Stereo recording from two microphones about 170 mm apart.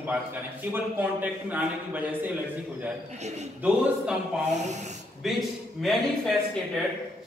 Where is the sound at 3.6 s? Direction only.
5° right (ahead or behind).